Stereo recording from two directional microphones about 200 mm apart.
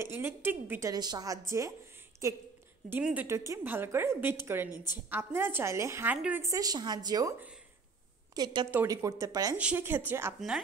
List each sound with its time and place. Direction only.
0.0 s a woman's voice: 10° right (ahead or behind)
2.9 s a woman's voice: 5° right (ahead or behind)